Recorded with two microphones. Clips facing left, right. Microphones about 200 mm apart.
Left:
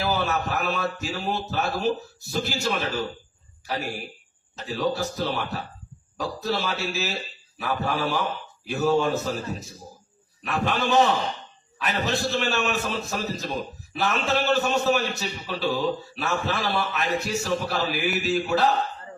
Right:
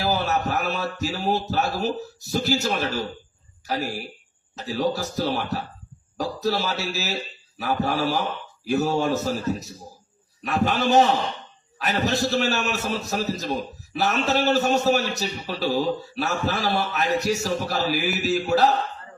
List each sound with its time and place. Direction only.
0.0 s a man's voice: 40° right (ahead or behind)
4.5 s a man's voice: 40° right (ahead or behind)